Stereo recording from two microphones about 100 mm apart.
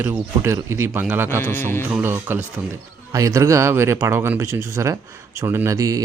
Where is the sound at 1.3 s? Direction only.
25° left (ahead or behind).